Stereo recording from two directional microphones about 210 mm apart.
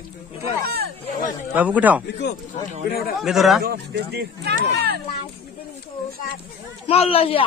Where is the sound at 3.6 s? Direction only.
50° right (ahead or behind).